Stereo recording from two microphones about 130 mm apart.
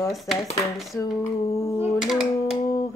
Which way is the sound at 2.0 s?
5° right (ahead or behind).